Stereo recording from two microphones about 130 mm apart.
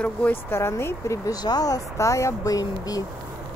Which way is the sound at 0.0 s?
15° left (ahead or behind).